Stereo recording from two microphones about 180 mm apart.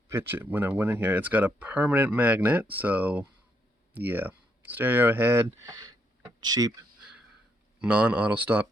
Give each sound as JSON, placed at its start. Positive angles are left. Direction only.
{"t": 0.1, "sound": "speech", "side_deg": -10}
{"t": 7.8, "sound": "speech", "side_deg": -5}